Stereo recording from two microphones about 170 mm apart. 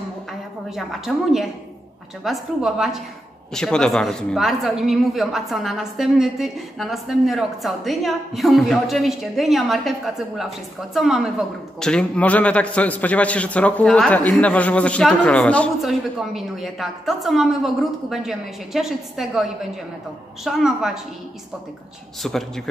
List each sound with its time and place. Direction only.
0.3 s a woman's voice: centre (ahead or behind)
20.4 s a man's voice: 5° right (ahead or behind)
22.2 s a man's voice: centre (ahead or behind)